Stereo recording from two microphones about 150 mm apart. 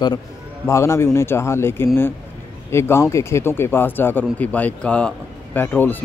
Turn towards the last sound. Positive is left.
turn(degrees=15)  # may be behind; listen again after turning